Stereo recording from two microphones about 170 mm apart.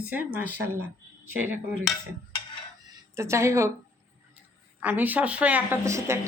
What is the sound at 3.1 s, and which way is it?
Speech, 15° right (ahead or behind).